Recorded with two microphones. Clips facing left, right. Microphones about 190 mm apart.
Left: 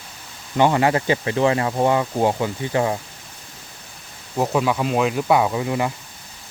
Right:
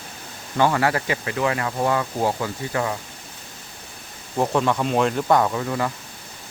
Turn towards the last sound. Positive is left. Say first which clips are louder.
# left 2 dB
turn(degrees=15)  # may be behind; listen again after turning